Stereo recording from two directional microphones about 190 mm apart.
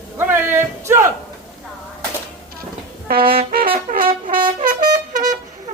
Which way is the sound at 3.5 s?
50° right (ahead or behind).